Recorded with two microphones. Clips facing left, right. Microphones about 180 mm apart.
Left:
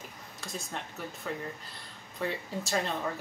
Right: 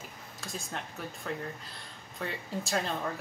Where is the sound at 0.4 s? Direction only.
Centre (ahead or behind).